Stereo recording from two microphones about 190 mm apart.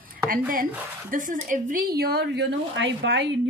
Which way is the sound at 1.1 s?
45° right (ahead or behind).